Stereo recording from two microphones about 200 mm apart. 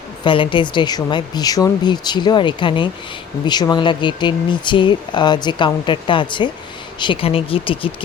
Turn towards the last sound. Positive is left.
turn(degrees=25)  # may be behind; listen again after turning